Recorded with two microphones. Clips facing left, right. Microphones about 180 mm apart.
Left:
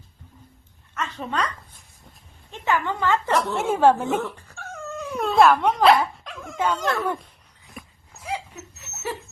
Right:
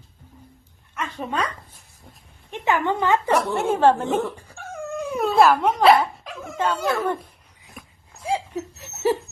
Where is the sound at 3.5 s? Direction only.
Centre (ahead or behind).